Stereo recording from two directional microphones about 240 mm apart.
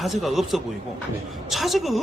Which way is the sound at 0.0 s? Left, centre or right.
Centre.